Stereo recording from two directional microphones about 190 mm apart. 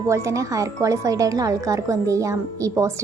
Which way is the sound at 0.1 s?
15° right (ahead or behind).